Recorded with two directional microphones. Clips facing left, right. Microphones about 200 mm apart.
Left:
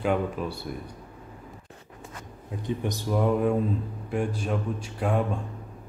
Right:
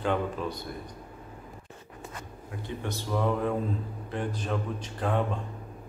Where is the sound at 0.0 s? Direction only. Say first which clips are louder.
Left 2 dB; 10° left (ahead or behind).